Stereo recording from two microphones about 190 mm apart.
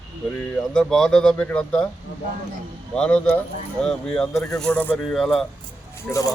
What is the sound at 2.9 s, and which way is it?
Speech, 5° left (ahead or behind).